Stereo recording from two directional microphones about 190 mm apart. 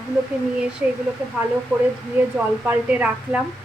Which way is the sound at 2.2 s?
10° right (ahead or behind).